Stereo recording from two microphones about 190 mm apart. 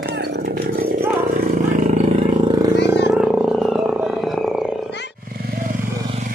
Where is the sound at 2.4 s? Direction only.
20° right (ahead or behind); by 4.7 s 5° right (ahead or behind).